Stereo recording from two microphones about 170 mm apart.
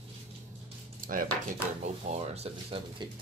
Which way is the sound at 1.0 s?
55° right (ahead or behind).